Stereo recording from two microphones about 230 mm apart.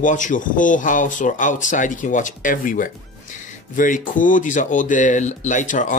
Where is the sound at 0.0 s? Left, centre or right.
Left.